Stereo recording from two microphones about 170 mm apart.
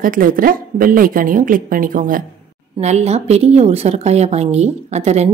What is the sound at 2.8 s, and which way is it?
A woman's voice, 40° right (ahead or behind).